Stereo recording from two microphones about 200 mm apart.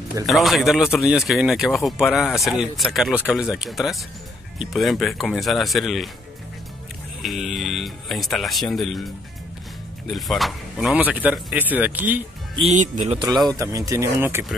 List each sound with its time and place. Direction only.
0.3 s speech: centre (ahead or behind)
7.2 s speech: centre (ahead or behind)
10.0 s speech: centre (ahead or behind)
12.5 s speech: 35° right (ahead or behind)
13.6 s speech: 15° right (ahead or behind)